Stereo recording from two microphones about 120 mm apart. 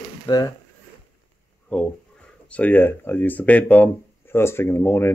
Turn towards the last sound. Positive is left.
turn(degrees=20)  # may be behind; listen again after turning